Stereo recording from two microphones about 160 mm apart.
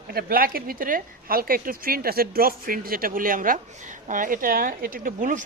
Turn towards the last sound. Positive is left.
turn(degrees=-55)  # may be behind; listen again after turning